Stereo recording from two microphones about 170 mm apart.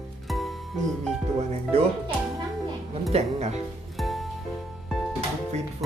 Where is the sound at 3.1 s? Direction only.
40° right (ahead or behind).